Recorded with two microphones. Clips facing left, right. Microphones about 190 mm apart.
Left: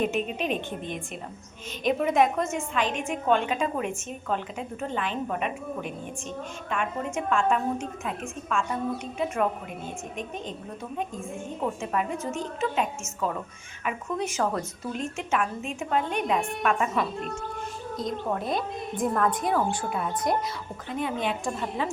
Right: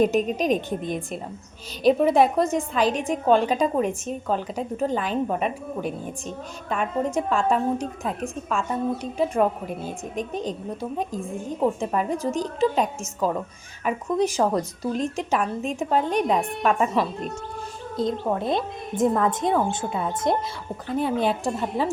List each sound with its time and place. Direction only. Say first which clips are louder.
0.0 s a woman's voice: right 6 dB; 40° right (ahead or behind); by 20.3 s 25° right (ahead or behind)
20.9 s a woman's voice: right 6 dB; 35° right (ahead or behind)